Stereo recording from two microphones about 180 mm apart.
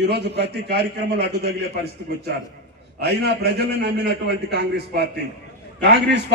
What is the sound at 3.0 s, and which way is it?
A man's voice, 65° right (ahead or behind).